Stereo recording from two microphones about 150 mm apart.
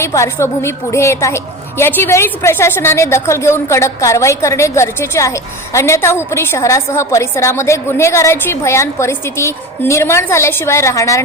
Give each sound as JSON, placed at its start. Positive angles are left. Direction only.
{"t": 0.0, "sound": "a woman's voice", "side_deg": 20}